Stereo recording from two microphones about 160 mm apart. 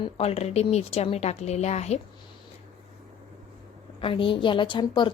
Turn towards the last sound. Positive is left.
turn(degrees=30)  # may be behind; listen again after turning